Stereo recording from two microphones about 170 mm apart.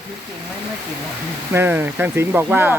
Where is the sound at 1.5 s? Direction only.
15° right (ahead or behind).